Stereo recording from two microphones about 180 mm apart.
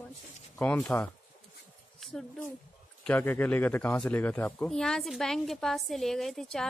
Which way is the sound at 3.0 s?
10° left (ahead or behind).